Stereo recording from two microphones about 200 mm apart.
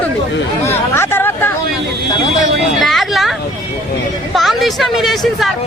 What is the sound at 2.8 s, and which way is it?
Speech, centre (ahead or behind).